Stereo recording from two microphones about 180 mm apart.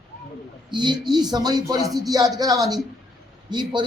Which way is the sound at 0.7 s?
25° right (ahead or behind).